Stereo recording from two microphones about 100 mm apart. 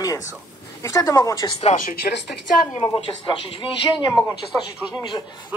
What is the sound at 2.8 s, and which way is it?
A man's voice, 60° left (ahead or behind).